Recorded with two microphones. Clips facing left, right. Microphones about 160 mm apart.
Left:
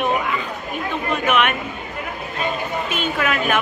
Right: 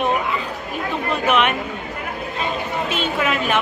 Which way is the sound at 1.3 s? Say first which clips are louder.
Right 1 dB; 30° right (ahead or behind).